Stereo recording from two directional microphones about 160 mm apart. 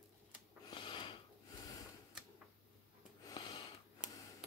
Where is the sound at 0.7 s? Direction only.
30° left (ahead or behind).